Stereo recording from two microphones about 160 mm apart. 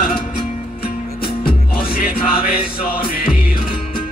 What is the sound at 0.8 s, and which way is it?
Music, 70° left (ahead or behind).